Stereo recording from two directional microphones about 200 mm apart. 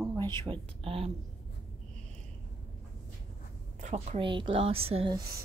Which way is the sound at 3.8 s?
35° right (ahead or behind).